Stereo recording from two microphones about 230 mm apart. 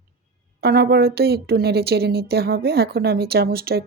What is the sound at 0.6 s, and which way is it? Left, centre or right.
Speech, right.